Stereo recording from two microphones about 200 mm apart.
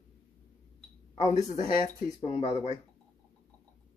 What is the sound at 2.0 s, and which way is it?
Speech, 30° left (ahead or behind).